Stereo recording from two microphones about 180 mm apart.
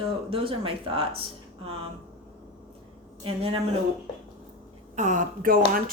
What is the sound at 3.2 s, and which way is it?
Speech, 30° right (ahead or behind).